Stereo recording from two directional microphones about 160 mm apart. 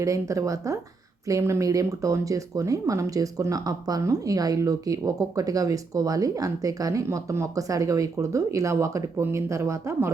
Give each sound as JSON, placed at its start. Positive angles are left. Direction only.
{"t": 0.0, "sound": "speech", "side_deg": -20}